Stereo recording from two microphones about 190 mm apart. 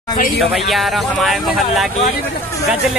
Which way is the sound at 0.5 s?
Centre (ahead or behind).